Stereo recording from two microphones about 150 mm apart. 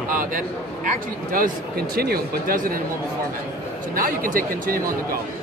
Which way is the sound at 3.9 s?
65° right (ahead or behind).